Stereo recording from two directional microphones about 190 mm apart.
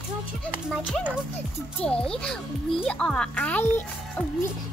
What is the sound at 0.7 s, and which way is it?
Speech, centre (ahead or behind).